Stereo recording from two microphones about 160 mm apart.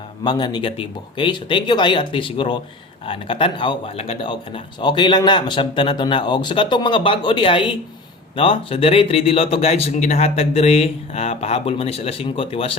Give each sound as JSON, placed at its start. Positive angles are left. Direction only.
{"t": 0.3, "sound": "speech", "side_deg": 25}